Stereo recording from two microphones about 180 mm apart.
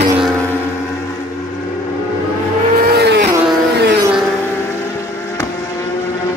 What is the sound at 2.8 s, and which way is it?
Vehicle, 60° right (ahead or behind).